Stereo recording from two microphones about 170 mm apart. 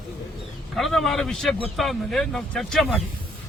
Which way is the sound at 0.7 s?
Centre (ahead or behind).